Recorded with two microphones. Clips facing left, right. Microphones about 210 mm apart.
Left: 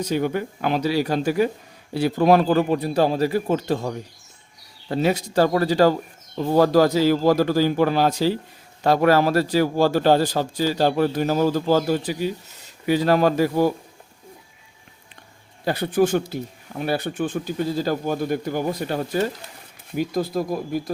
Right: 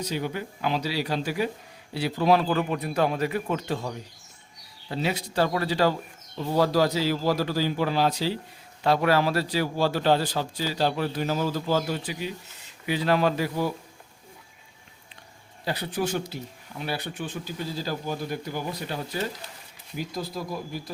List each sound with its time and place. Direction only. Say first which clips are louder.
0.0 s a man's voice: left 7 dB; 50° left (ahead or behind)
15.6 s a man's voice: left 9 dB; 50° left (ahead or behind)